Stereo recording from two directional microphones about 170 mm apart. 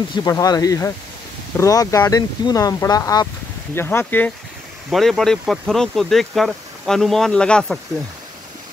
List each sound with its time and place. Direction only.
0.1 s speech: 20° left (ahead or behind); by 7.8 s 5° left (ahead or behind)